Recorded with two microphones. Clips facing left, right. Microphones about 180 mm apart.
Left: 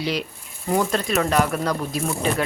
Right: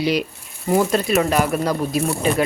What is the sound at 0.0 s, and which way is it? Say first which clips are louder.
Speech: right 5 dB; 10° right (ahead or behind).